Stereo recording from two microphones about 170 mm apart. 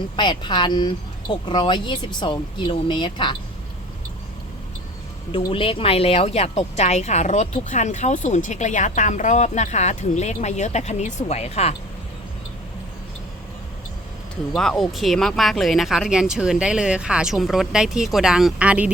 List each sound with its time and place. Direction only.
0.2 s speech: 25° left (ahead or behind)
5.3 s speech: 30° left (ahead or behind)
14.5 s speech: 5° left (ahead or behind)